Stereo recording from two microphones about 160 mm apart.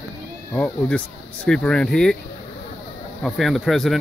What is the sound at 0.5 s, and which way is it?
Speech, 5° left (ahead or behind).